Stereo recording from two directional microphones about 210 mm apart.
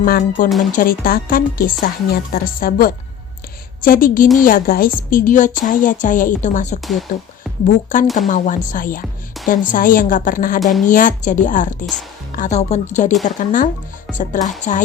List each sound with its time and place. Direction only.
0.0 s a woman's voice: 45° left (ahead or behind)
10.6 s speech: centre (ahead or behind)
10.8 s a woman's voice: 40° left (ahead or behind)